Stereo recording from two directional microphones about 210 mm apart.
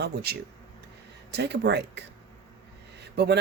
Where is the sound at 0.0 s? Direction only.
50° right (ahead or behind).